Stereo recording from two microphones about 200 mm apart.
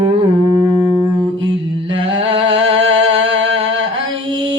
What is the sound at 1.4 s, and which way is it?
Mantra, 25° right (ahead or behind).